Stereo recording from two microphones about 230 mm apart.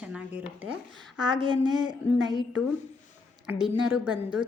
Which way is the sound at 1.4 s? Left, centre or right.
Right.